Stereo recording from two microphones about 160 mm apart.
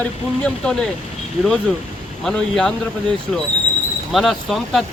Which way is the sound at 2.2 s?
5° left (ahead or behind).